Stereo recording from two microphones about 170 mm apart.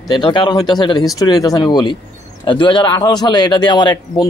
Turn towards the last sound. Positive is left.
turn(degrees=25)  # may be behind; listen again after turning